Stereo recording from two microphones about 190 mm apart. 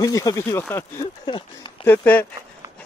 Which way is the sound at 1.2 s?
25° left (ahead or behind).